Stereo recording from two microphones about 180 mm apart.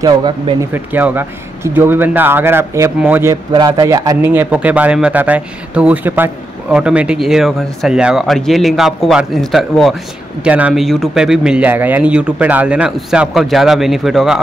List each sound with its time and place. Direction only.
0.0 s speech: 25° right (ahead or behind)
0.7 s a man's voice: 10° right (ahead or behind)